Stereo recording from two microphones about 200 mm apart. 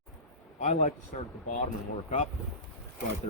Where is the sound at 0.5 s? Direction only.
35° left (ahead or behind).